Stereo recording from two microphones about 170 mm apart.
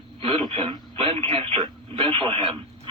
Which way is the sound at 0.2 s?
35° right (ahead or behind).